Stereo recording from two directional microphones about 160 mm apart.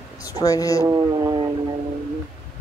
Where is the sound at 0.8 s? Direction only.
25° right (ahead or behind).